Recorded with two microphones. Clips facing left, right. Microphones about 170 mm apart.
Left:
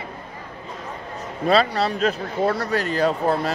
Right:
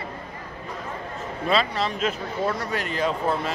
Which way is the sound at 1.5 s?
35° left (ahead or behind).